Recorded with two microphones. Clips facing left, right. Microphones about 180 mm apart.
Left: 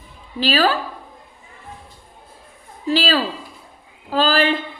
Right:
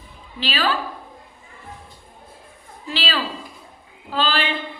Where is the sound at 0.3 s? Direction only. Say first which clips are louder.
Left 5 dB; 40° left (ahead or behind).